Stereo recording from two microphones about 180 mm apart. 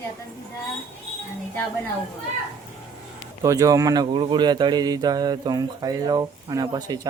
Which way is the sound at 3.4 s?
20° right (ahead or behind).